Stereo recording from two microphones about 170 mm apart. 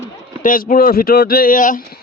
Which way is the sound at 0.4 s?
55° left (ahead or behind).